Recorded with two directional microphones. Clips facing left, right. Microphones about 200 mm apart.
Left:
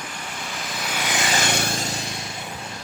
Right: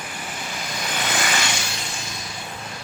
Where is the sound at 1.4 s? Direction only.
55° left (ahead or behind).